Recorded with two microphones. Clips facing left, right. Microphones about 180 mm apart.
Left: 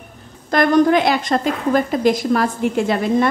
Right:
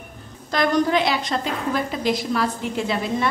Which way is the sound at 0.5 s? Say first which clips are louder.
Left 6 dB; 55° left (ahead or behind).